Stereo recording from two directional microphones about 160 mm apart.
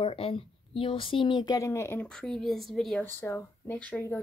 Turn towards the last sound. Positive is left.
turn(degrees=10)  # may be behind; listen again after turning